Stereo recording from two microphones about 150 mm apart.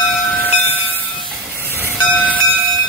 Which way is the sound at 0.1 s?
10° left (ahead or behind).